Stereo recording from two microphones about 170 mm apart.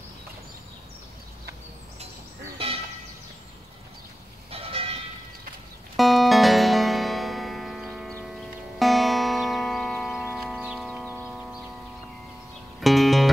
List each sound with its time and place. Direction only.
4.5 s vehicle: 35° right (ahead or behind)
5.9 s music: centre (ahead or behind)
11.2 s a sound: centre (ahead or behind)
12.8 s music: centre (ahead or behind)